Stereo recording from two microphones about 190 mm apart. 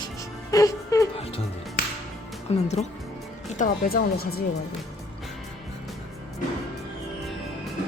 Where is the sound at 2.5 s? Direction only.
35° left (ahead or behind).